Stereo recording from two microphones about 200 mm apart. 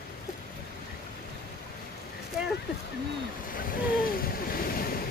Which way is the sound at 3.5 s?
45° left (ahead or behind).